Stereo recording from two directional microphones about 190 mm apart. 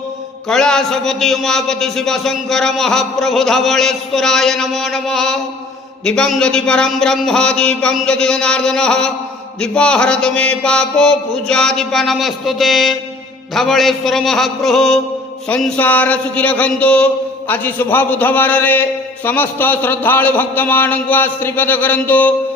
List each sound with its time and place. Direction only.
0.4 s a man's voice: 5° left (ahead or behind)